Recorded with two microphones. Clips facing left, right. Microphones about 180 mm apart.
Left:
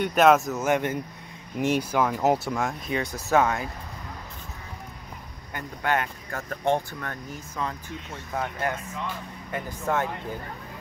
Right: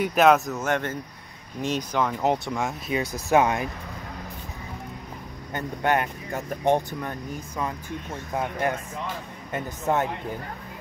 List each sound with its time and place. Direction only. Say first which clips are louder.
0.0 s speech: even; centre (ahead or behind)
2.9 s speech: right 3 dB; 10° right (ahead or behind)
5.5 s speech: right 3 dB; 20° right (ahead or behind)